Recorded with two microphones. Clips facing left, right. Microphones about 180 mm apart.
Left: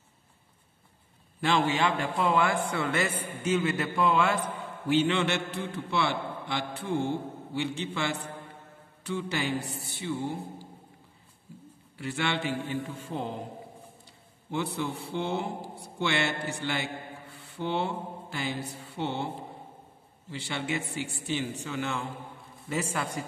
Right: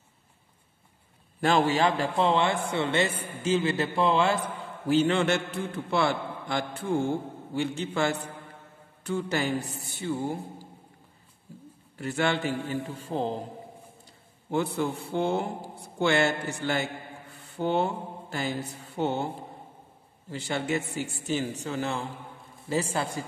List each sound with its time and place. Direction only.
1.4 s a man's voice: 45° right (ahead or behind)
4.8 s a man's voice: 40° right (ahead or behind)
12.0 s a man's voice: 45° right (ahead or behind)
14.5 s a man's voice: 45° right (ahead or behind)
17.5 s mantra: 45° right (ahead or behind)
20.2 s a man's voice: 45° right (ahead or behind)